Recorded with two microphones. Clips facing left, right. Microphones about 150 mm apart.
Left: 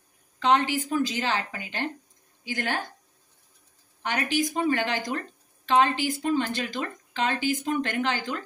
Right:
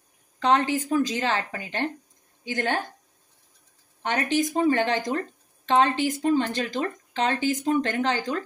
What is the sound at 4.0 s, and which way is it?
A woman's voice, 30° right (ahead or behind).